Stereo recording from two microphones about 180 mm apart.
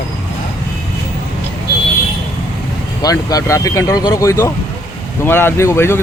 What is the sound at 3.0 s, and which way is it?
Speech, 20° left (ahead or behind).